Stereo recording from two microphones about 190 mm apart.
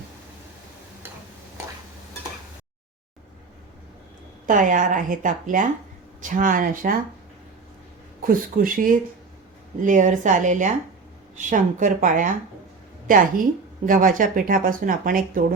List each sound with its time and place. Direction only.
4.4 s speech: 45° right (ahead or behind)
8.3 s a woman's voice: 45° right (ahead or behind)